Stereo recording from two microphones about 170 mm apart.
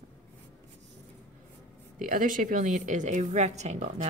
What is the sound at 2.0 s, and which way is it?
Speech, 55° right (ahead or behind).